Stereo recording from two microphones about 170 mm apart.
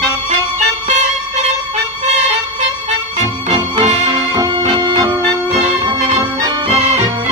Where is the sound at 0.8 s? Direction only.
40° right (ahead or behind).